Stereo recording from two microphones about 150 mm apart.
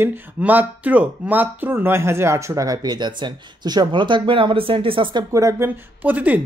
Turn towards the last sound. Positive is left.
turn(degrees=-10)  # may be behind; listen again after turning